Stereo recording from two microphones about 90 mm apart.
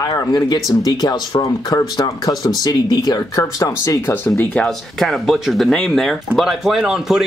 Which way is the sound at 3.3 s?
35° left (ahead or behind).